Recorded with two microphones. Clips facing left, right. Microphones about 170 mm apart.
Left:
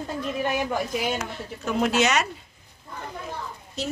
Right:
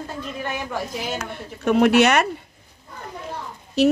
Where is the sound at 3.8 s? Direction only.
65° right (ahead or behind).